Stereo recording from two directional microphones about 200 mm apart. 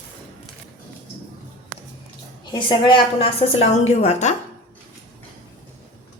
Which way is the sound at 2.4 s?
20° left (ahead or behind).